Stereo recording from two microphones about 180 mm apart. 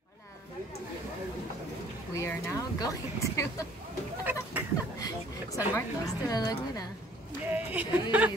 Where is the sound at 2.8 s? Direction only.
15° left (ahead or behind).